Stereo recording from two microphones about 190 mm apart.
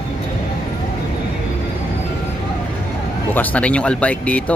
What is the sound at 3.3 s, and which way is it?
Speech, 10° left (ahead or behind).